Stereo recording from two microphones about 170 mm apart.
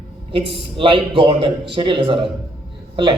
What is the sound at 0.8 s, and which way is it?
A man's voice, 30° right (ahead or behind).